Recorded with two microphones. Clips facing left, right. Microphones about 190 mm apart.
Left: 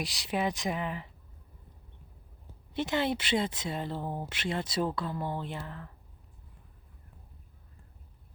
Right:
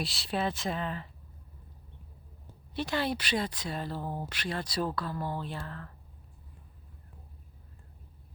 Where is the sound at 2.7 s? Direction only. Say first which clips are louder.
Left 2 dB; 20° left (ahead or behind).